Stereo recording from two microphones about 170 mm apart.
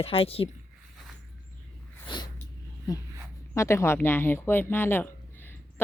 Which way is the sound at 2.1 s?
30° left (ahead or behind).